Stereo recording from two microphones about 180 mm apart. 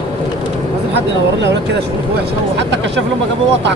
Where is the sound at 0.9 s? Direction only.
75° right (ahead or behind).